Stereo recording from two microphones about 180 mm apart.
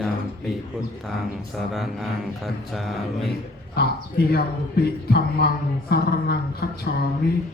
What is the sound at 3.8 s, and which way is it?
Speech, 60° left (ahead or behind).